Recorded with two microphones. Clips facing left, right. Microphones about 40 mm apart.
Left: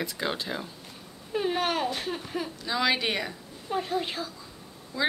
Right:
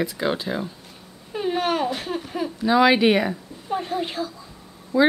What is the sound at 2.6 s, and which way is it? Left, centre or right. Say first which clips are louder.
Speech: right 11 dB; right.